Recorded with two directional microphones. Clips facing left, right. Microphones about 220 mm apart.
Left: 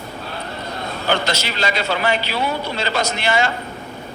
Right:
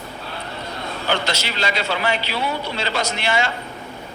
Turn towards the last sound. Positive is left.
turn(degrees=45)  # may be behind; listen again after turning